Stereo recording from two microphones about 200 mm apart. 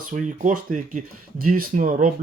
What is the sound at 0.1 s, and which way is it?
Speech, 40° right (ahead or behind).